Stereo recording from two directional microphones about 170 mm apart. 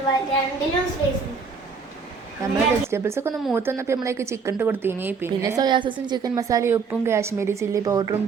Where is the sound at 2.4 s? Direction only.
15° right (ahead or behind).